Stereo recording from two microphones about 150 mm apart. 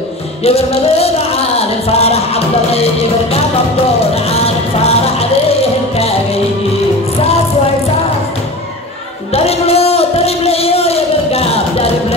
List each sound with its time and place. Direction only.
0.4 s music: 40° left (ahead or behind)
4.1 s music: 40° left (ahead or behind)
9.3 s a sound: 40° left (ahead or behind)